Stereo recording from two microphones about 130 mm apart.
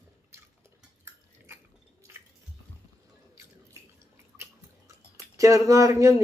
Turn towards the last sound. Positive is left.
turn(degrees=-25)  # may be behind; listen again after turning